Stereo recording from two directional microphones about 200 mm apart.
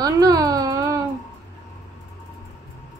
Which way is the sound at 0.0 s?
20° right (ahead or behind).